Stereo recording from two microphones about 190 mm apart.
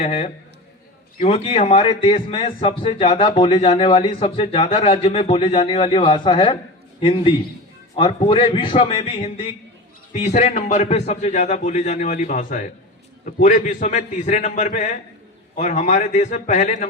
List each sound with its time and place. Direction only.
0.0 s a man's voice: 35° left (ahead or behind)